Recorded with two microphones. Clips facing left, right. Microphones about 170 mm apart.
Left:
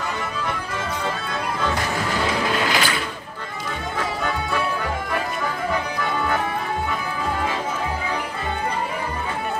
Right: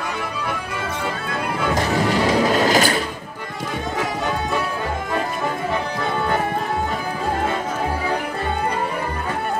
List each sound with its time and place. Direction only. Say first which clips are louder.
2.2 s music: right 5 dB; 40° right (ahead or behind)